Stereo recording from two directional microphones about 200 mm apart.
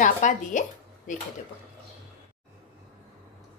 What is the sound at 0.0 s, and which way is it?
A woman's voice, 40° left (ahead or behind).